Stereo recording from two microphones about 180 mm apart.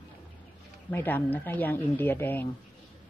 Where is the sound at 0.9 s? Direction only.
10° left (ahead or behind).